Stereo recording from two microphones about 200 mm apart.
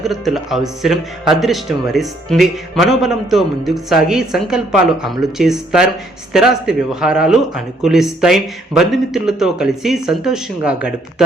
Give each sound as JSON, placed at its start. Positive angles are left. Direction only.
{"t": 0.0, "sound": "a man's voice", "side_deg": 0}